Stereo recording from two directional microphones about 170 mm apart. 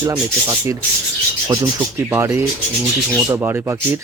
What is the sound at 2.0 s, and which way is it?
Speech, 15° right (ahead or behind).